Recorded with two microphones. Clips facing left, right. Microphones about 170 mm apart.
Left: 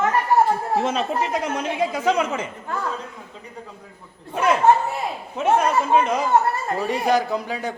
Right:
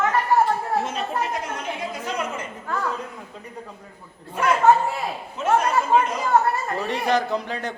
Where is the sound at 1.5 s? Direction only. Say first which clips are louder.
Left 6 dB; 90° left.